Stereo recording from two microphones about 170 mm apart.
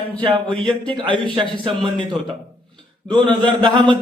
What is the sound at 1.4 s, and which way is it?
Speech, 30° right (ahead or behind).